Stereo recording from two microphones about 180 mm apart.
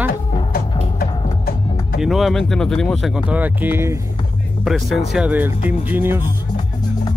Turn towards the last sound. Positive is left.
turn(degrees=-10)  # may be behind; listen again after turning